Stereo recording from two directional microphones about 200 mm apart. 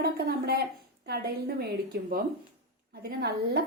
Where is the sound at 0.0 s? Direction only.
55° right (ahead or behind).